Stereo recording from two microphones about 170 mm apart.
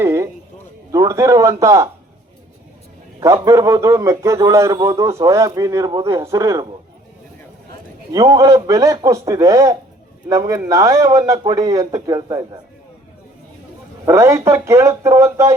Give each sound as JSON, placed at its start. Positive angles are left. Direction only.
{"t": 0.0, "sound": "a sound", "side_deg": -15}
{"t": 0.9, "sound": "a man's voice", "side_deg": -20}
{"t": 3.2, "sound": "a man's voice", "side_deg": -15}
{"t": 8.1, "sound": "speech", "side_deg": -20}
{"t": 14.0, "sound": "a man's voice", "side_deg": -15}